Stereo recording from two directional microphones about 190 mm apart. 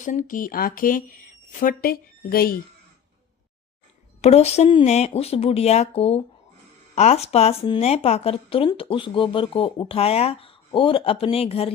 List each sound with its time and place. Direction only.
0.0 s speech: 45° left (ahead or behind)
4.2 s speech: 35° left (ahead or behind)